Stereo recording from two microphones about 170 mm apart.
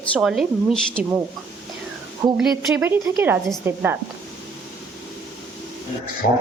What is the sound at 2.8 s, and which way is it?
Speech, 15° right (ahead or behind).